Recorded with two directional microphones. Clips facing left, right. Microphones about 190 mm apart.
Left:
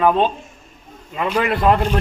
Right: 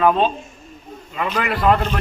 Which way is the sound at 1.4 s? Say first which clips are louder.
Left 2 dB; 25° left (ahead or behind).